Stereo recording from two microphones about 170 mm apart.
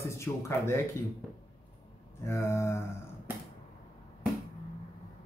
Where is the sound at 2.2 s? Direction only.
15° left (ahead or behind).